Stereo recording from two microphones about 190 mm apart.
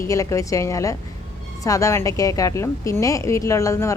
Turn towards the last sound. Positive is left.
turn(degrees=15)  # may be behind; listen again after turning